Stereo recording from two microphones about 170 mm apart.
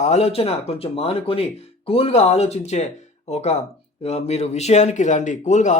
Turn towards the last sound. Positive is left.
turn(degrees=45)  # may be behind; listen again after turning